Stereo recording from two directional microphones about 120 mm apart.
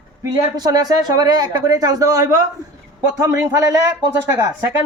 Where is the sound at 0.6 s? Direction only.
35° right (ahead or behind).